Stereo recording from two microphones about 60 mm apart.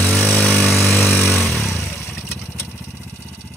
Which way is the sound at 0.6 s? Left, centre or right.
Centre.